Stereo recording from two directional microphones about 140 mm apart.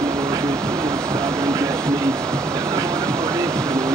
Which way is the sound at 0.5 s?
5° left (ahead or behind).